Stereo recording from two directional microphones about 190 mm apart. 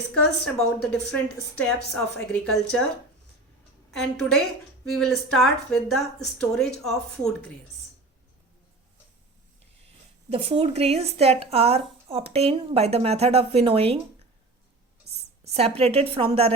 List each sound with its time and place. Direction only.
0.1 s speech: 5° left (ahead or behind)
4.0 s speech: centre (ahead or behind)
10.2 s speech: 30° right (ahead or behind)
15.5 s speech: 30° right (ahead or behind)